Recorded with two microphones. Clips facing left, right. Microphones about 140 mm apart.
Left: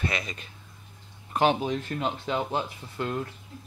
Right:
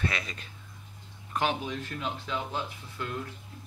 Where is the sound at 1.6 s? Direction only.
40° left (ahead or behind).